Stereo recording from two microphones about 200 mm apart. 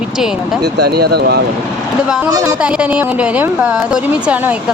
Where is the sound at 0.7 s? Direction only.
55° right (ahead or behind).